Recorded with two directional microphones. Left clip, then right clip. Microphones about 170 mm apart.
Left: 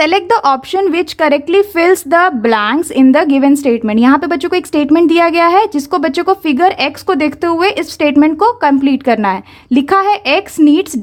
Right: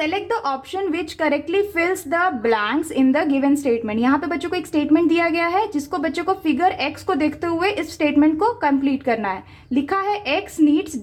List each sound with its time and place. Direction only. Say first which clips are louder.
0.0 s speech: left 12 dB; 45° left (ahead or behind)